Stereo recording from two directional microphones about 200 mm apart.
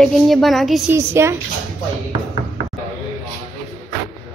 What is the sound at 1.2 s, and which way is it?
Speech, 10° right (ahead or behind).